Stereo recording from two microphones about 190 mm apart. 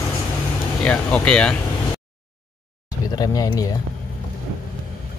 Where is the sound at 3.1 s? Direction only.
20° left (ahead or behind).